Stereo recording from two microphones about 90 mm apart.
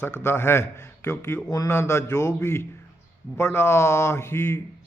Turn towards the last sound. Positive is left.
turn(degrees=30)  # may be behind; listen again after turning